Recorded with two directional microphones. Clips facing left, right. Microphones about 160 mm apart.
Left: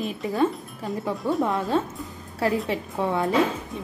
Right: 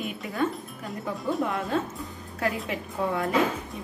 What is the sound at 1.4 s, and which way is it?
Speech, 30° left (ahead or behind).